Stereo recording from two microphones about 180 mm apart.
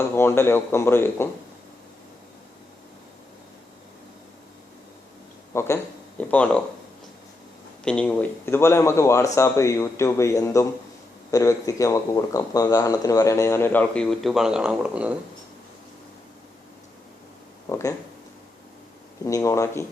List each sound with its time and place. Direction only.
0.2 s speech: 15° left (ahead or behind)
5.5 s speech: 15° left (ahead or behind)
7.9 s speech: 5° left (ahead or behind)
17.7 s speech: 15° left (ahead or behind)
19.2 s speech: 15° left (ahead or behind)